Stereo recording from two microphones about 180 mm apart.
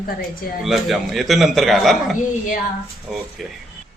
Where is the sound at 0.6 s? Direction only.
Centre (ahead or behind).